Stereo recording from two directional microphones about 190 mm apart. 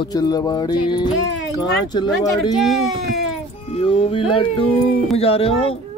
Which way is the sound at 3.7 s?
30° left (ahead or behind).